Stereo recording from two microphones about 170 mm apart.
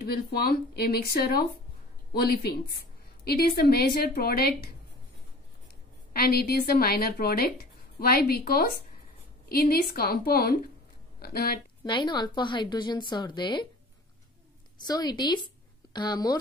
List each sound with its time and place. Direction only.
0.0 s speech: 65° left (ahead or behind)
6.1 s speech: 65° left (ahead or behind)
11.8 s a woman's voice: 25° left (ahead or behind)
14.9 s a woman's voice: 25° left (ahead or behind)